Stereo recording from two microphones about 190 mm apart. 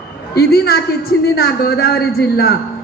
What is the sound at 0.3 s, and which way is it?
A man's voice, 55° left (ahead or behind).